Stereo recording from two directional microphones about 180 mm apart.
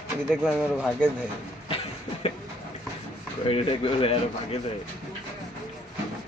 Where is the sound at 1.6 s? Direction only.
30° left (ahead or behind).